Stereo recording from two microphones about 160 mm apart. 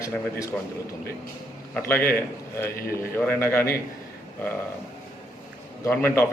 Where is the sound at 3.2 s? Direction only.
15° left (ahead or behind).